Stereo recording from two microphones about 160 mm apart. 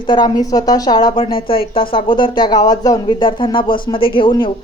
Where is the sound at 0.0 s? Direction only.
30° left (ahead or behind).